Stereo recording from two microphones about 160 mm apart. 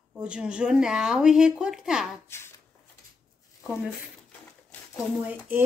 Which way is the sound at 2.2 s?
15° left (ahead or behind).